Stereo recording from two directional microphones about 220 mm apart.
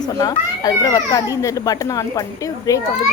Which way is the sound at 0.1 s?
15° left (ahead or behind).